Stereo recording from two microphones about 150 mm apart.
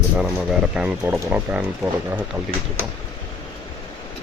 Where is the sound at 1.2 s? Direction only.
15° right (ahead or behind).